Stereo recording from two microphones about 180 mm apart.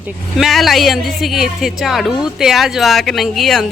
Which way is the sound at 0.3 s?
Centre (ahead or behind).